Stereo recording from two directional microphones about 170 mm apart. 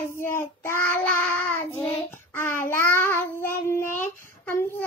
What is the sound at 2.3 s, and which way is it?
Child singing, 15° left (ahead or behind).